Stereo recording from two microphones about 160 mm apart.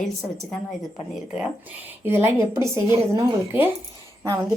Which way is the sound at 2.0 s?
15° right (ahead or behind).